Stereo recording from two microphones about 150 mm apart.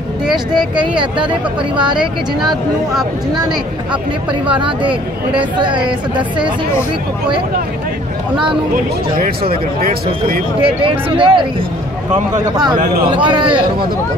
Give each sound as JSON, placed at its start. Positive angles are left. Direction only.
{"t": 0.7, "sound": "speech", "side_deg": -30}
{"t": 4.6, "sound": "speech", "side_deg": -35}
{"t": 6.1, "sound": "speech", "side_deg": -30}
{"t": 9.8, "sound": "speech", "side_deg": -70}
{"t": 10.6, "sound": "speech", "side_deg": -35}
{"t": 13.1, "sound": "speech", "side_deg": -35}